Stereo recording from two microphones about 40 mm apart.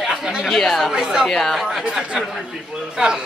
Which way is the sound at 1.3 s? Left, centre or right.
Centre.